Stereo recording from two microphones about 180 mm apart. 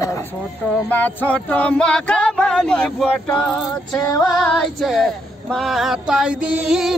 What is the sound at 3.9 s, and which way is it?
Music, 20° left (ahead or behind).